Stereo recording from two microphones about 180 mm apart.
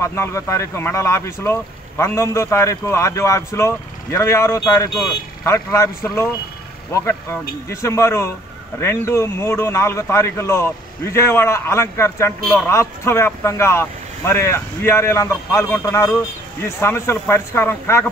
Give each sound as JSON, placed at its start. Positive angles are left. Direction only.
{"t": 0.0, "sound": "speech", "side_deg": 15}